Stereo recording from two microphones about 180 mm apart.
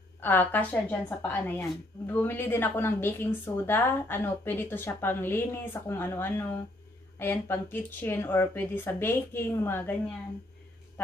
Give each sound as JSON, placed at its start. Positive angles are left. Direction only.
{"t": 0.2, "sound": "a woman's voice", "side_deg": 10}